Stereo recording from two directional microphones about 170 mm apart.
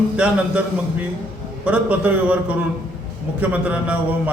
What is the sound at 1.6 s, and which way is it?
A man's voice, 10° right (ahead or behind).